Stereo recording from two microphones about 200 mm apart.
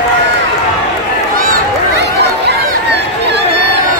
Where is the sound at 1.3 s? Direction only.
50° right (ahead or behind).